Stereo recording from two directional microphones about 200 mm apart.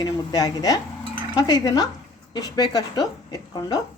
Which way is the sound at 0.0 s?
20° left (ahead or behind).